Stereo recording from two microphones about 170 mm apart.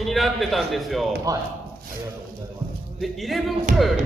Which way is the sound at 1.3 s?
20° right (ahead or behind).